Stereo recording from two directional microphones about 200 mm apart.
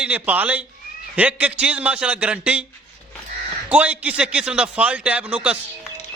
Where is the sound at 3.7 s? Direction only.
5° right (ahead or behind).